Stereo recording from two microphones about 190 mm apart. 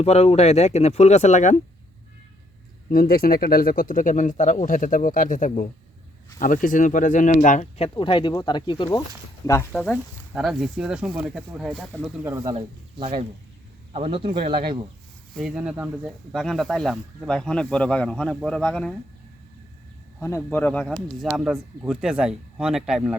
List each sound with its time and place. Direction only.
0.0 s speech: 35° left (ahead or behind)
2.9 s speech: 50° left (ahead or behind); by 9.0 s 25° left (ahead or behind)
9.7 s speech: centre (ahead or behind)
12.2 s speech: 15° right (ahead or behind)
12.5 s speech: 30° right (ahead or behind)
15.4 s speech: 5° right (ahead or behind)
20.2 s speech: 10° left (ahead or behind); by 23.1 s 5° right (ahead or behind)